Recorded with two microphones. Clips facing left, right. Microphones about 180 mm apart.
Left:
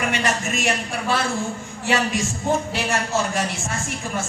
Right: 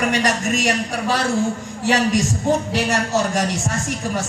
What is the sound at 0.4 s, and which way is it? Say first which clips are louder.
A man's voice: right 4 dB; 40° right (ahead or behind).